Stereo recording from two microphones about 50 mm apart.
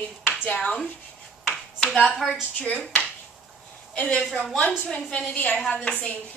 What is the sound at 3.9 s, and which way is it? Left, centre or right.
A woman's voice, left.